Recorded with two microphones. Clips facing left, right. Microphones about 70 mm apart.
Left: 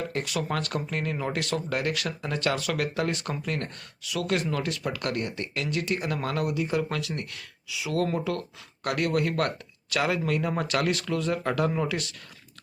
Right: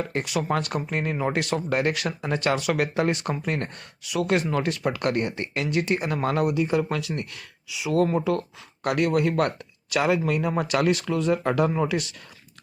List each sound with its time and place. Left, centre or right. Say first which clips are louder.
0.3 s speech: right 4 dB; centre